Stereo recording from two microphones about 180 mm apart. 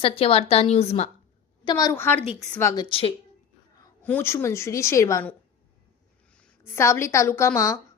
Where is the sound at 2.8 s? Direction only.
30° left (ahead or behind).